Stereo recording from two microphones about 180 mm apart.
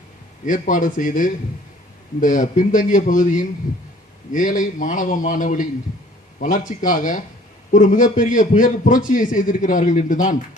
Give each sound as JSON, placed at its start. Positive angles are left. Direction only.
{"t": 0.4, "sound": "a man's voice", "side_deg": 45}